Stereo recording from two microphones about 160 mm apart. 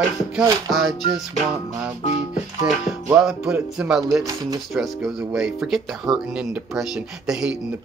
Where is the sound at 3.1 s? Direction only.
5° right (ahead or behind).